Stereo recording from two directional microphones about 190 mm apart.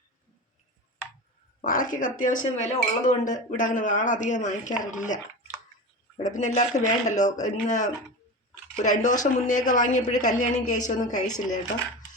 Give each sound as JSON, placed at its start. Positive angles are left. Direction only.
{"t": 1.6, "sound": "speech", "side_deg": 45}
{"t": 6.1, "sound": "speech", "side_deg": 40}